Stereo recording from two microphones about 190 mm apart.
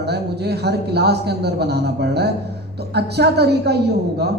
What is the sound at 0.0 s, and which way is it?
A man's voice, 60° right (ahead or behind).